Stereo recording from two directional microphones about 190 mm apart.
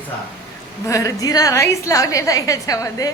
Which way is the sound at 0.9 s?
15° left (ahead or behind).